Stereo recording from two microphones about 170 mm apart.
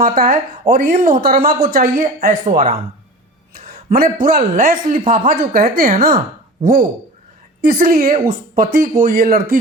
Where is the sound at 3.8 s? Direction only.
55° right (ahead or behind).